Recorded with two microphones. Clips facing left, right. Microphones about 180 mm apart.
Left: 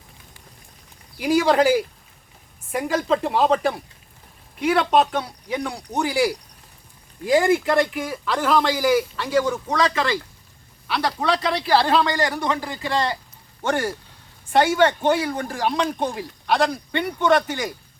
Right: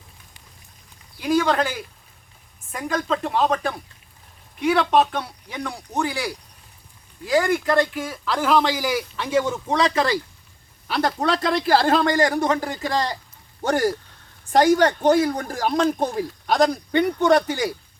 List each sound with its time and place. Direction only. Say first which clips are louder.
1.2 s a woman's voice: left 3 dB; 10° left (ahead or behind)
2.7 s a woman's voice: left 3 dB; 10° left (ahead or behind)
7.3 s speech: left 2 dB; 25° left (ahead or behind)
7.9 s a man's voice: left 1 dB; centre (ahead or behind)
9.3 s speech: even; 20° right (ahead or behind)
10.8 s speech: right 1 dB; 45° right (ahead or behind)